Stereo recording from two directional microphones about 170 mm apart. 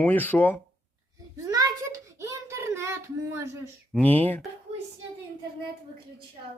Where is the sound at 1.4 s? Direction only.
20° right (ahead or behind).